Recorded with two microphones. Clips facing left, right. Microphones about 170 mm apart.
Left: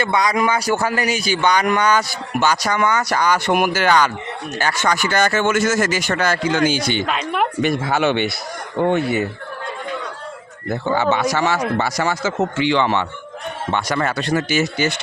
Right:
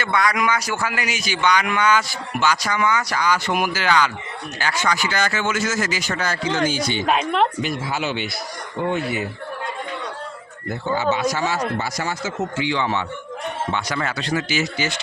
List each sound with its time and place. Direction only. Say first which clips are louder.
0.0 s a man's voice: left 3 dB; 20° left (ahead or behind); by 3.2 s 40° left (ahead or behind)
3.2 s speech: left 4 dB; 60° left (ahead or behind); by 7.0 s 80° left
7.9 s speech: left 7 dB; 65° left (ahead or behind)
10.9 s a man's voice: left 2 dB; 75° left (ahead or behind)
13.7 s speech: left 7 dB; 55° left (ahead or behind)